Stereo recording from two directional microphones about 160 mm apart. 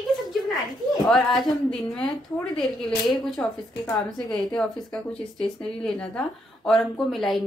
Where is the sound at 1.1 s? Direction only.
Centre (ahead or behind).